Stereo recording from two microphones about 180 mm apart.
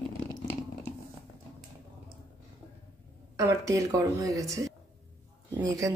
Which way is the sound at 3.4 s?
20° right (ahead or behind).